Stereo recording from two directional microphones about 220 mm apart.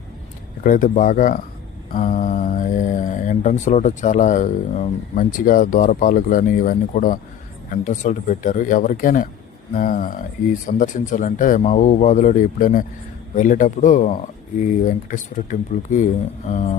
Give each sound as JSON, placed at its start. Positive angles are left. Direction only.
{"t": 0.6, "sound": "speech", "side_deg": 35}